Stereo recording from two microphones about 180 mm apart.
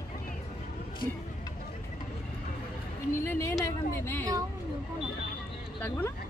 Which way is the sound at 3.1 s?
15° left (ahead or behind).